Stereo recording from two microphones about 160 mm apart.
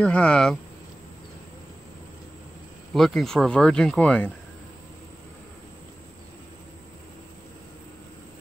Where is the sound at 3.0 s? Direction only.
Centre (ahead or behind).